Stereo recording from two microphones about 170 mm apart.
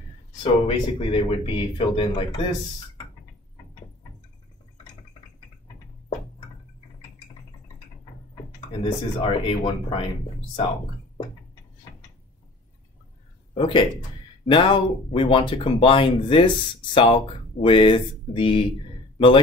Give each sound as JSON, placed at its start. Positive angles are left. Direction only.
{"t": 0.4, "sound": "speech", "side_deg": 35}
{"t": 8.8, "sound": "speech", "side_deg": 30}
{"t": 13.6, "sound": "speech", "side_deg": 30}